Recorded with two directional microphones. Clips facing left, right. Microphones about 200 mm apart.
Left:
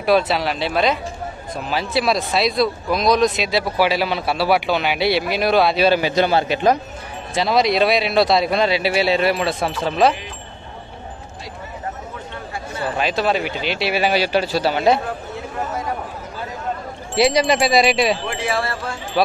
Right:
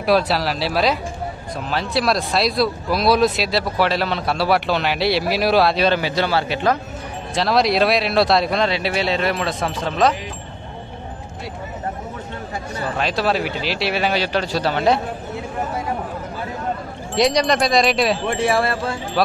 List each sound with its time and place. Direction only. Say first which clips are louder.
0.0 s speech: left 1 dB; centre (ahead or behind)
6.0 s a man's voice: left 3 dB; 20° left (ahead or behind)
7.3 s speech: even; centre (ahead or behind)
12.9 s speech: left 1 dB; centre (ahead or behind)
17.1 s speech: left 1 dB; 5° left (ahead or behind)